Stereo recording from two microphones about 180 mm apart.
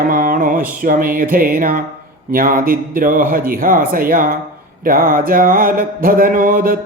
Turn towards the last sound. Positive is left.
turn(degrees=-55)  # may be behind; listen again after turning